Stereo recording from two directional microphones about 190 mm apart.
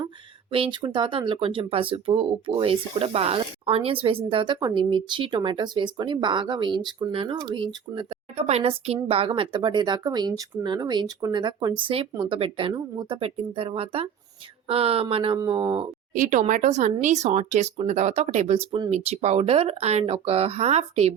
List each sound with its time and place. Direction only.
0.5 s speech: 25° right (ahead or behind)
16.1 s speech: 40° right (ahead or behind)